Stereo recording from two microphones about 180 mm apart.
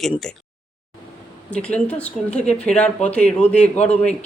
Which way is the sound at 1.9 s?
5° left (ahead or behind).